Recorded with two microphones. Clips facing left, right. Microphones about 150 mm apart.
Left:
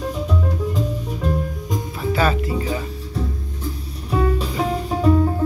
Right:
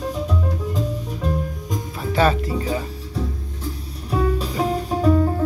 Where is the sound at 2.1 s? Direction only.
35° right (ahead or behind).